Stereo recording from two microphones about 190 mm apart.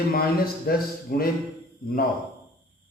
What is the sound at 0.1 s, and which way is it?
Speech, 50° left (ahead or behind).